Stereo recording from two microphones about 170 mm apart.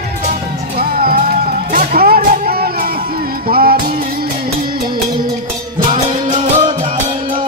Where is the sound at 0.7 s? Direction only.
60° right (ahead or behind).